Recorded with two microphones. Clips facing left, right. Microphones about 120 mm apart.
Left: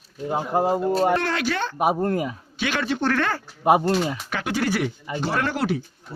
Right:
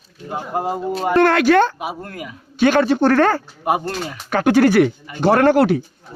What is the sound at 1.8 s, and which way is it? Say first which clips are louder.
Speech: left 7 dB; 40° left (ahead or behind).